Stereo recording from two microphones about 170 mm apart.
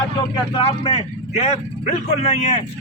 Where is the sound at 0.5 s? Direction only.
35° left (ahead or behind).